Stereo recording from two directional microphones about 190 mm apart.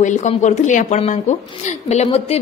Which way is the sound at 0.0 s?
40° left (ahead or behind).